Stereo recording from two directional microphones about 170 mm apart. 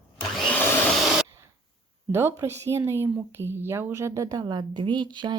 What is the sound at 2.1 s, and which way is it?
A woman's voice, 15° right (ahead or behind).